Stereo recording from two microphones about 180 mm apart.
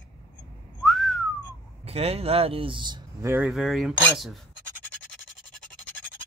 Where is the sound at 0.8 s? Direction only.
Centre (ahead or behind).